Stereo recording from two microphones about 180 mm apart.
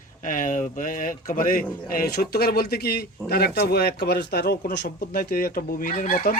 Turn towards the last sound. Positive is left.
turn(degrees=50)  # may be behind; listen again after turning